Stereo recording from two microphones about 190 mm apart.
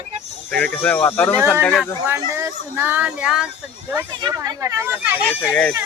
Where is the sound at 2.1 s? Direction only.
15° right (ahead or behind).